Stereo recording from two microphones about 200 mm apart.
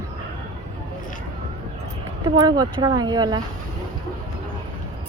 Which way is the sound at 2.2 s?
20° right (ahead or behind).